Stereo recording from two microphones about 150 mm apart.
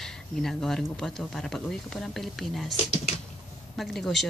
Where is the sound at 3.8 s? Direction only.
Centre (ahead or behind).